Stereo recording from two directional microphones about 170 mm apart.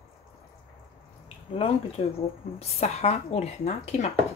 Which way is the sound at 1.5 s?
35° left (ahead or behind).